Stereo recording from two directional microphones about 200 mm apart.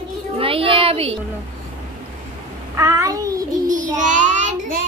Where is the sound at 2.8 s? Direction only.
15° right (ahead or behind).